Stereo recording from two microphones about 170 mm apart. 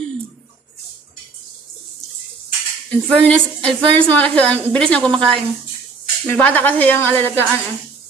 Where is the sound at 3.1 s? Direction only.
5° left (ahead or behind).